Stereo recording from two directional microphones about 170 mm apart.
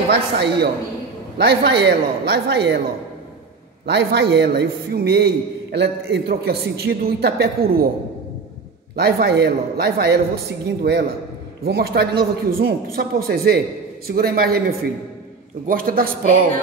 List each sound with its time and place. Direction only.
0.1 s a man's voice: 80° right
3.8 s a man's voice: 80° right; by 7.9 s 60° right (ahead or behind)
8.9 s a man's voice: 70° right (ahead or behind)
15.6 s a woman's voice: 55° right (ahead or behind)